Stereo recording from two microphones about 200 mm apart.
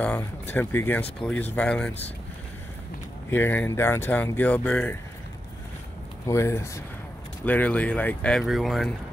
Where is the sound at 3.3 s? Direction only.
10° left (ahead or behind).